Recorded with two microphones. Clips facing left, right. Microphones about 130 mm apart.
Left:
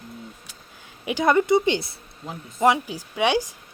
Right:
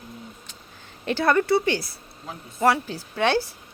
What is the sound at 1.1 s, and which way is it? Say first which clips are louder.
Speech: left 1 dB; 15° left (ahead or behind).